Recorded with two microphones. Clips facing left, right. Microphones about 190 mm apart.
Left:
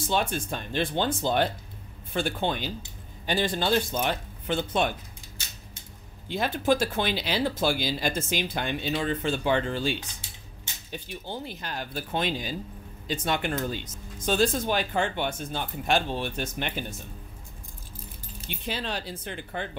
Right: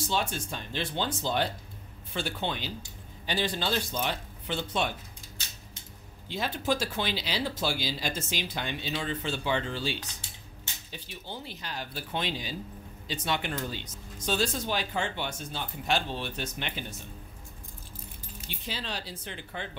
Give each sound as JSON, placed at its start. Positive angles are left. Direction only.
{"t": 0.1, "sound": "speech", "side_deg": 55}
{"t": 6.2, "sound": "speech", "side_deg": 55}
{"t": 18.5, "sound": "speech", "side_deg": 55}